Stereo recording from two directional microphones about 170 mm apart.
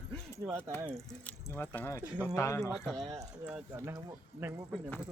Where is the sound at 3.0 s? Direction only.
20° right (ahead or behind).